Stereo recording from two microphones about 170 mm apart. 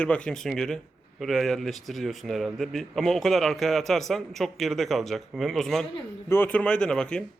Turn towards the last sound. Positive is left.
turn(degrees=5)  # may be behind; listen again after turning